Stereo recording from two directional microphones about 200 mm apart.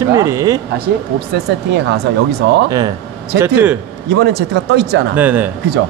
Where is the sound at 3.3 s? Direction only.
10° right (ahead or behind).